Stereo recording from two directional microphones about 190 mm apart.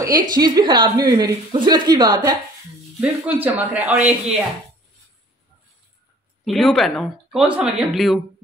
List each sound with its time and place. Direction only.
0.2 s a woman's voice: 20° right (ahead or behind)
3.0 s a man's voice: 10° right (ahead or behind)
6.4 s speech: centre (ahead or behind)